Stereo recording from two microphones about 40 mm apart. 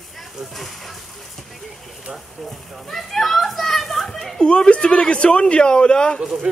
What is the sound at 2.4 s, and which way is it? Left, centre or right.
Children playing, centre.